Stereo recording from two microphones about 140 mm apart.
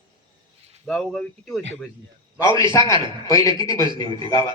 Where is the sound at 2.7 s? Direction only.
20° left (ahead or behind).